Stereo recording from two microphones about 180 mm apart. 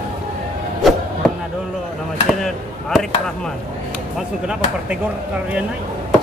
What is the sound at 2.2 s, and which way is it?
Chop, centre (ahead or behind).